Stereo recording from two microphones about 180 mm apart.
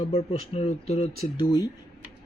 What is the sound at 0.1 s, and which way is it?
Speech, 35° left (ahead or behind).